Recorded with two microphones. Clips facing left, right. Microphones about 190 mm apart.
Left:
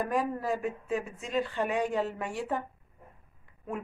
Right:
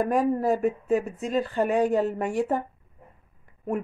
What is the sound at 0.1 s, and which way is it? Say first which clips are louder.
Speech: right 7 dB; 45° right (ahead or behind).